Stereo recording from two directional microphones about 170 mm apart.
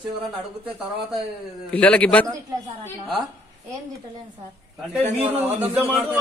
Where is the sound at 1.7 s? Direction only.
10° left (ahead or behind).